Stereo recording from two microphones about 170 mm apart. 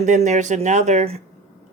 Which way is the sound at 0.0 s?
45° right (ahead or behind).